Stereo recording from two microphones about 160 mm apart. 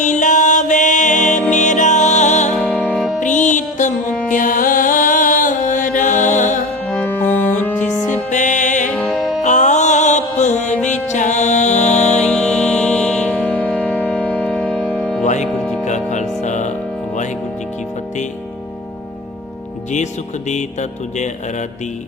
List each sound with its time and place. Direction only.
0.0 s music: 50° left (ahead or behind)
2.8 s music: centre (ahead or behind)
3.2 s music: 50° left (ahead or behind)
6.8 s music: 10° left (ahead or behind)
8.3 s music: 50° left (ahead or behind)
8.9 s music: 5° left (ahead or behind)
9.4 s music: 50° left (ahead or behind)
12.1 s music: 5° left (ahead or behind)
15.2 s music: 50° left (ahead or behind)
20.5 s music: 45° left (ahead or behind)